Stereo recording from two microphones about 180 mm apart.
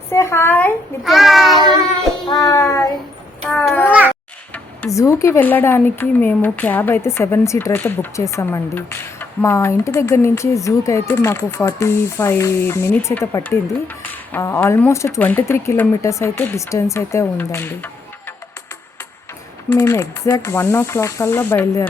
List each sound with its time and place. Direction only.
0.1 s speech: 15° left (ahead or behind)
1.0 s a child's voice: centre (ahead or behind)
2.5 s child singing: 15° left (ahead or behind)
3.4 s babbling: 5° left (ahead or behind)
4.5 s speech: 10° left (ahead or behind)
19.7 s speech: 15° left (ahead or behind)